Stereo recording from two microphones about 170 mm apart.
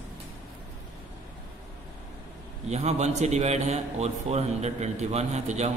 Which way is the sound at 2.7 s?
40° right (ahead or behind).